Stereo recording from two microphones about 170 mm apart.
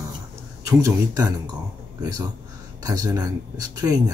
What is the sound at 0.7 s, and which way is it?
Speech, 20° right (ahead or behind).